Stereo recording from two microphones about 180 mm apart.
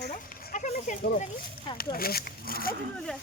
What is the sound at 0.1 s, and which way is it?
Goat, 45° left (ahead or behind).